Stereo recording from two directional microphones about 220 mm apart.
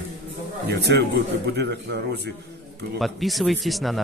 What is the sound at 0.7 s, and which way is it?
Speech, 50° right (ahead or behind).